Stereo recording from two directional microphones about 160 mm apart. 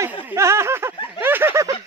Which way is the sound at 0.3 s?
15° right (ahead or behind).